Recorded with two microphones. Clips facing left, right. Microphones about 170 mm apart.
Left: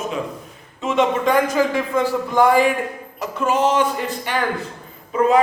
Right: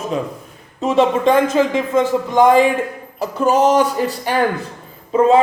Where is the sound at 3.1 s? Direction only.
40° right (ahead or behind).